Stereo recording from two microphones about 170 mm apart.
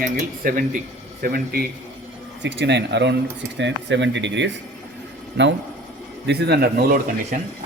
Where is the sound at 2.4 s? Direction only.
90° right.